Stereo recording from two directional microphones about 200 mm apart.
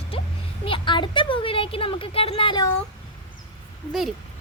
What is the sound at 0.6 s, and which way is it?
A woman's voice, 25° left (ahead or behind).